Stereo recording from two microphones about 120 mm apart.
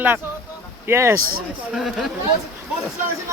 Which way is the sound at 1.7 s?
5° right (ahead or behind).